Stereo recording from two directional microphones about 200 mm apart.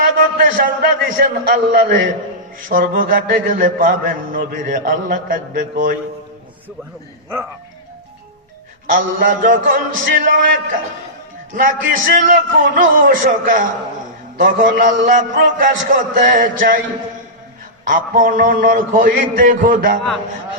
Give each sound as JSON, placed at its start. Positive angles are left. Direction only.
{"t": 0.3, "sound": "a man's voice", "side_deg": -45}
{"t": 8.9, "sound": "a man's voice", "side_deg": -45}
{"t": 17.8, "sound": "a man's voice", "side_deg": -45}